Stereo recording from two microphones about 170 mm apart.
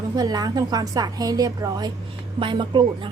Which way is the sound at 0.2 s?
25° right (ahead or behind).